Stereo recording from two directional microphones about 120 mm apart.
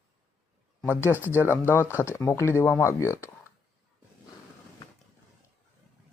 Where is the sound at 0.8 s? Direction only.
20° left (ahead or behind).